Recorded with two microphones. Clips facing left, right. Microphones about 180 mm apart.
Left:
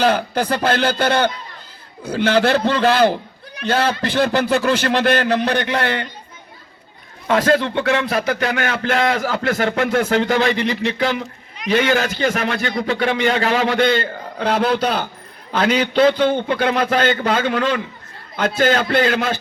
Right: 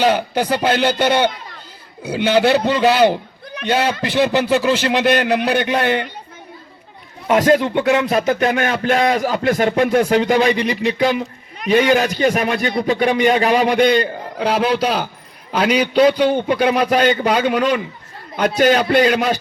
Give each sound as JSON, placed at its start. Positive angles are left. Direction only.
{"t": 0.0, "sound": "speech", "side_deg": -10}
{"t": 7.3, "sound": "speech", "side_deg": -20}